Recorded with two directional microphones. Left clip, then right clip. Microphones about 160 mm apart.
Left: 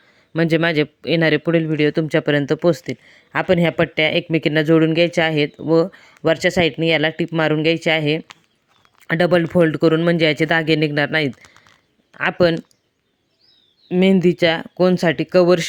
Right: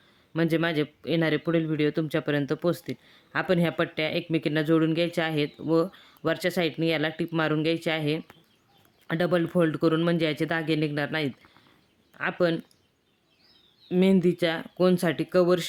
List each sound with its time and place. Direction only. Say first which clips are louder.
0.3 s speech: left 8 dB; 40° left (ahead or behind)
13.8 s speech: left 7 dB; 35° left (ahead or behind)